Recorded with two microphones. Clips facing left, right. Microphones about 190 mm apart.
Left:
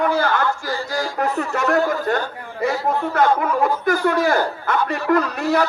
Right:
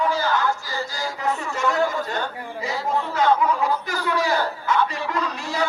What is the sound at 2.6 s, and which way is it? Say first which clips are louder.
A man's voice: left 5 dB; 60° left (ahead or behind).